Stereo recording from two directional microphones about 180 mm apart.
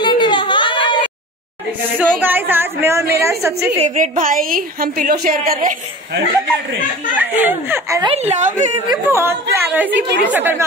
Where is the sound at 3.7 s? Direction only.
45° right (ahead or behind).